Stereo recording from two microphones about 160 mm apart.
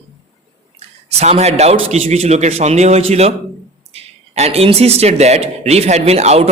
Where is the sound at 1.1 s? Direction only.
40° right (ahead or behind).